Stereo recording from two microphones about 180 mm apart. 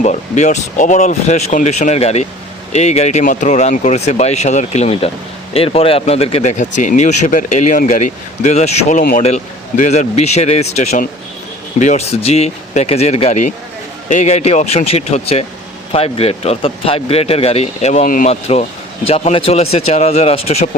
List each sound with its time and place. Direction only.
0.0 s speech: 40° left (ahead or behind)